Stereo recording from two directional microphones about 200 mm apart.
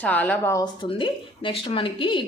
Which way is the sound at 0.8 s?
25° left (ahead or behind).